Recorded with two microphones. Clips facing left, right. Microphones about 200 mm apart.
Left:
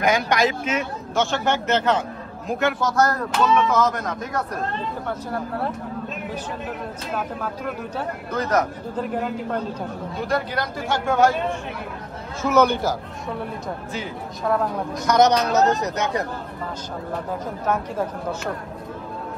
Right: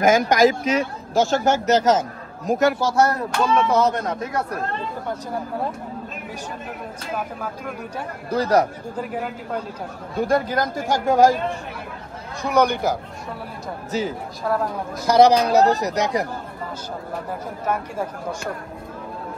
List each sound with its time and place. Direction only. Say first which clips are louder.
0.0 s speech: right 5 dB; 45° right (ahead or behind)
5.0 s speech: even; 15° right (ahead or behind)
7.2 s speech: left 2 dB; 10° right (ahead or behind)
8.3 s speech: right 4 dB; 35° right (ahead or behind)
8.9 s speech: left 6 dB; 5° right (ahead or behind)
10.1 s speech: right 5 dB; 45° right (ahead or behind)
12.5 s speech: even; 15° right (ahead or behind)
13.9 s speech: right 10 dB; 40° right (ahead or behind)
14.5 s speech: left 1 dB; centre (ahead or behind)
15.0 s speech: right 3 dB; 30° right (ahead or behind)
17.6 s speech: left 1 dB; 10° right (ahead or behind)